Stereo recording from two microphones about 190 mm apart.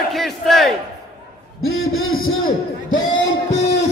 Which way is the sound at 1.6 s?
90° left.